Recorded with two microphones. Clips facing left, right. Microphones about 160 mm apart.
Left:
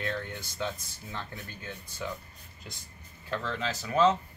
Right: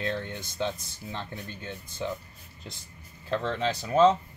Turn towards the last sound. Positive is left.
turn(degrees=-30)  # may be behind; listen again after turning